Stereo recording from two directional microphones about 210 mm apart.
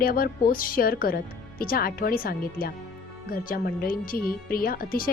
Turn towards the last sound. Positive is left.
turn(degrees=45)  # may be behind; listen again after turning